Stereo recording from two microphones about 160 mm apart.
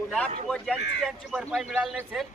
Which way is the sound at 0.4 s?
5° left (ahead or behind).